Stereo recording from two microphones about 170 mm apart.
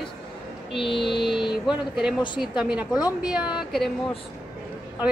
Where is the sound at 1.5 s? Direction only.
5° right (ahead or behind).